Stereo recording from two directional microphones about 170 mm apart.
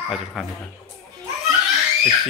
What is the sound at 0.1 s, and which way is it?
Speech, centre (ahead or behind).